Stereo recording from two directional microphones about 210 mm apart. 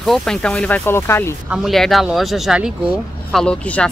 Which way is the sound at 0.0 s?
Centre (ahead or behind).